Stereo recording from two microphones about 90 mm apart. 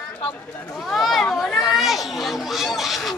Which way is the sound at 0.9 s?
Centre (ahead or behind).